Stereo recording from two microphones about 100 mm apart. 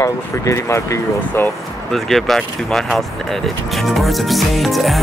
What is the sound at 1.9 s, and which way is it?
Speech, centre (ahead or behind).